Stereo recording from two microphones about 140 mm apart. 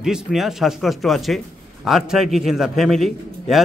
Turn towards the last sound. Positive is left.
turn(degrees=0)  # may be behind; listen again after turning